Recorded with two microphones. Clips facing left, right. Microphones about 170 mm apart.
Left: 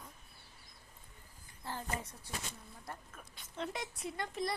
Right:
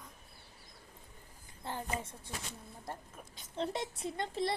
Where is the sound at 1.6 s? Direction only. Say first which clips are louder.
Right 2 dB; 20° right (ahead or behind).